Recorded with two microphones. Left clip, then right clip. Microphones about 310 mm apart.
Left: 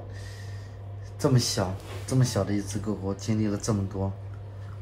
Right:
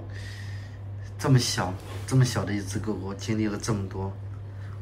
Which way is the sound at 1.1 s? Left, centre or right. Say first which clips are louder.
Even; centre.